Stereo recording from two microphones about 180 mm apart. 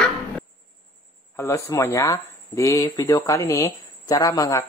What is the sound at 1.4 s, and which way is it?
Speech, 15° left (ahead or behind).